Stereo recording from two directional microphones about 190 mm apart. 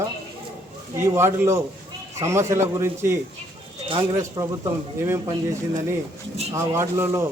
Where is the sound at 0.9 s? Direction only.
15° right (ahead or behind).